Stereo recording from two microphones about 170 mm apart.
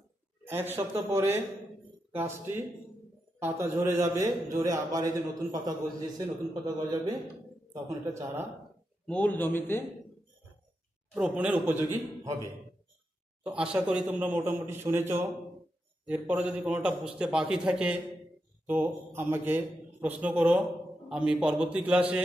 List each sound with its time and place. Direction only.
0.5 s a man's voice: 15° right (ahead or behind)
9.0 s a man's voice: 5° left (ahead or behind)
11.6 s a man's voice: 15° right (ahead or behind)
13.4 s a man's voice: 5° right (ahead or behind)